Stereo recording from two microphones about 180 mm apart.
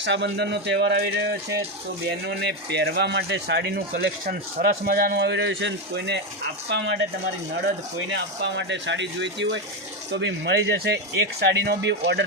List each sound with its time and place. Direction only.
0.0 s speech: 75° right (ahead or behind)
6.7 s speech: 75° right (ahead or behind)
8.1 s speech: 75° right (ahead or behind)